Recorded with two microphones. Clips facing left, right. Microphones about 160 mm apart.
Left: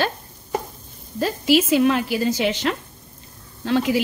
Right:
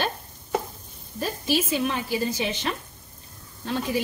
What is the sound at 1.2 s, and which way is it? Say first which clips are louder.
A woman's voice: left 7 dB; 90° left.